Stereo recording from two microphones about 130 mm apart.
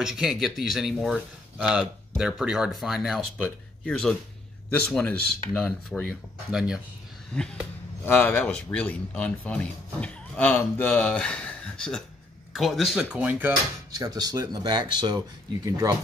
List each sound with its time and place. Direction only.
0.0 s speech: 5° right (ahead or behind)
3.3 s speech: 15° left (ahead or behind)
6.5 s speech: 5° right (ahead or behind)
7.3 s speech: 5° left (ahead or behind); by 13.5 s 10° right (ahead or behind)
13.9 s speech: 30° right (ahead or behind)